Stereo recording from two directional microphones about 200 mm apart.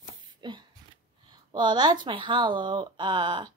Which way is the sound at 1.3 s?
20° right (ahead or behind).